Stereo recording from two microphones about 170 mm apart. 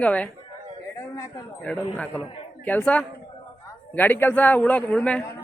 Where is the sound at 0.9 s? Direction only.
20° left (ahead or behind).